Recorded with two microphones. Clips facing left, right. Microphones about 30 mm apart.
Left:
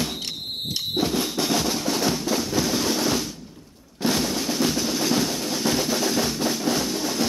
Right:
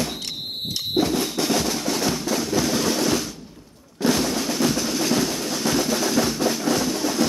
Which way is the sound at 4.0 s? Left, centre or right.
Left.